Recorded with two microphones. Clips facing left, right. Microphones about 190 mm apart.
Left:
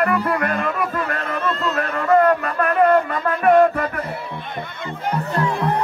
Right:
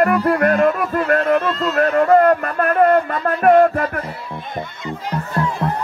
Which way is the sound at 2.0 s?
45° right (ahead or behind).